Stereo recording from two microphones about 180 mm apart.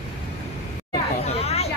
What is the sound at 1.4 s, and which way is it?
Speech, 35° left (ahead or behind).